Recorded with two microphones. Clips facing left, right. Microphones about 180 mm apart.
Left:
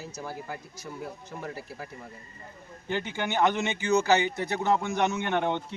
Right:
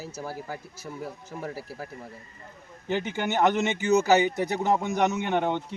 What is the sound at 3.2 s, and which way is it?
Speech, 45° right (ahead or behind).